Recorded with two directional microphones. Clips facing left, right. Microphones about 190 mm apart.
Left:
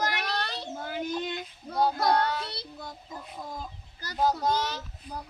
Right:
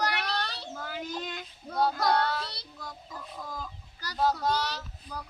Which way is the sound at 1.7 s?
20° left (ahead or behind).